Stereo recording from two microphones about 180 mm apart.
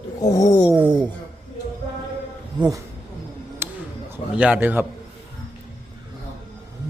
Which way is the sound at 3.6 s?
10° right (ahead or behind).